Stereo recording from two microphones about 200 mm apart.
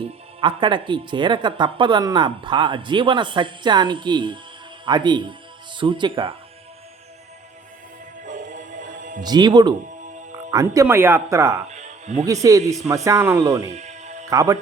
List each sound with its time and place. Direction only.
0.3 s speech: 25° right (ahead or behind)
8.2 s music: 40° right (ahead or behind)
9.2 s speech: 20° right (ahead or behind)
11.7 s music: 35° right (ahead or behind)
12.2 s speech: 15° right (ahead or behind)
13.7 s music: 35° right (ahead or behind)
14.3 s speech: 15° right (ahead or behind)